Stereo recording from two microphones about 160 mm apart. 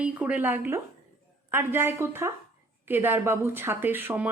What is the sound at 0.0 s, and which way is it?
Speech, 10° right (ahead or behind).